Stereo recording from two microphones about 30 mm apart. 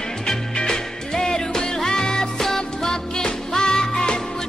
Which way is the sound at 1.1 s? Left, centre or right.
Centre.